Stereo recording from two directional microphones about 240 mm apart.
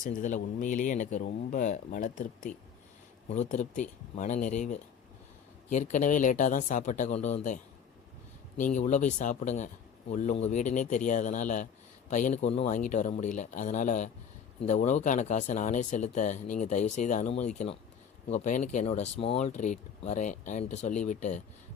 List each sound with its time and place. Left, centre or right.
0.0 s speech: left